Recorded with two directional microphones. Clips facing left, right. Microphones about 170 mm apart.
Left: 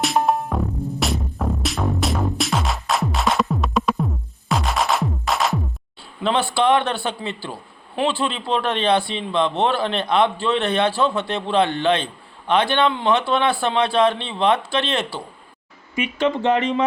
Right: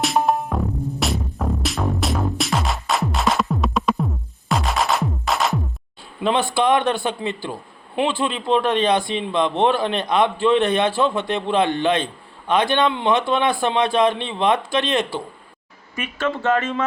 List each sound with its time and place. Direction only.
0.0 s music: centre (ahead or behind)
6.5 s speech: 15° right (ahead or behind)
16.0 s speech: 15° left (ahead or behind)